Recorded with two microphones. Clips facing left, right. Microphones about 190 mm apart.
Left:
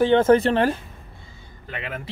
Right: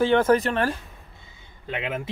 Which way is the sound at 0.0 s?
25° left (ahead or behind).